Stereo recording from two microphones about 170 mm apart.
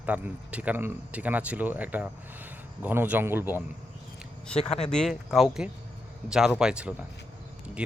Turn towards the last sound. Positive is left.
turn(degrees=-5)  # may be behind; listen again after turning